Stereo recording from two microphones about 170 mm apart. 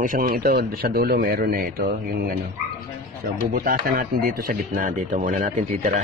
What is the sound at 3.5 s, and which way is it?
Speech, 60° right (ahead or behind).